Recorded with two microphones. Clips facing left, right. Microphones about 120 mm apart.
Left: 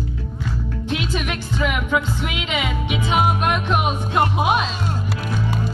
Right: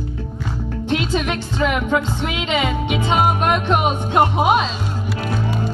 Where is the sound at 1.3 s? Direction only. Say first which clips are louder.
Right 3 dB; 35° right (ahead or behind).